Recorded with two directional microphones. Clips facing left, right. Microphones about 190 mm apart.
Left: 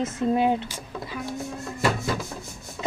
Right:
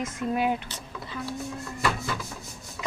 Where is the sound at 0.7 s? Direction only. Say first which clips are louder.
Left 4 dB; 15° left (ahead or behind).